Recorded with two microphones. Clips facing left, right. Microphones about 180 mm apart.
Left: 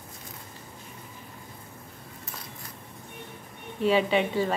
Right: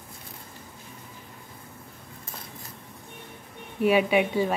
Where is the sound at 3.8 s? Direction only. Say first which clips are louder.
Right 2 dB; 10° right (ahead or behind).